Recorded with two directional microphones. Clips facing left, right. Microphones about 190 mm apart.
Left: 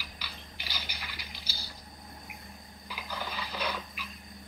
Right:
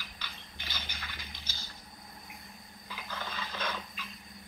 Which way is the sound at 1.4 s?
35° left (ahead or behind).